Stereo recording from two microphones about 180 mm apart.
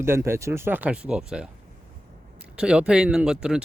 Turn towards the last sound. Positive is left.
turn(degrees=-5)  # may be behind; listen again after turning